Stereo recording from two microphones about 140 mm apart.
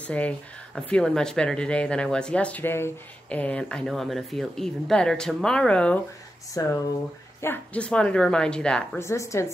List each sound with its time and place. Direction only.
0.0 s speech: 10° left (ahead or behind)
6.6 s a woman's voice: 25° left (ahead or behind)
7.4 s speech: 10° left (ahead or behind)
9.0 s a woman's voice: 20° left (ahead or behind)